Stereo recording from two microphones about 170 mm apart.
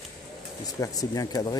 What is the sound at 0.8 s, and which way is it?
Speech, 20° left (ahead or behind).